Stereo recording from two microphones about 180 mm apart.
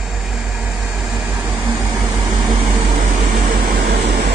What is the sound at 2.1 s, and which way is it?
Vehicle, 20° right (ahead or behind).